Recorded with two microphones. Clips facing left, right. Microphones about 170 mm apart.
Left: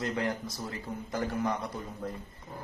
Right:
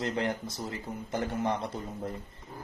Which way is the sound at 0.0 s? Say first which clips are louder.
Right 1 dB; 25° right (ahead or behind).